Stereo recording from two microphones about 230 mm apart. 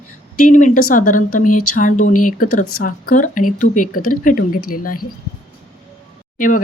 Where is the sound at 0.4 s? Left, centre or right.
Left.